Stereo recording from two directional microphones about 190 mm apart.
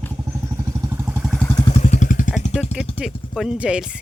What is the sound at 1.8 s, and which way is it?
Vehicle, 40° left (ahead or behind).